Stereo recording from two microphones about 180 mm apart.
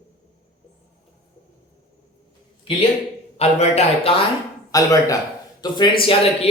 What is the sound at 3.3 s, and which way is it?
Speech, 35° left (ahead or behind).